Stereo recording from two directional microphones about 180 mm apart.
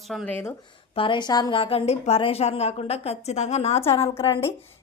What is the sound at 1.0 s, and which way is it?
A woman's voice, 25° left (ahead or behind).